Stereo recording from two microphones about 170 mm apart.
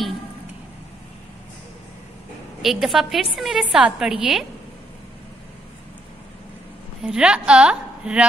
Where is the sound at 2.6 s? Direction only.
Centre (ahead or behind).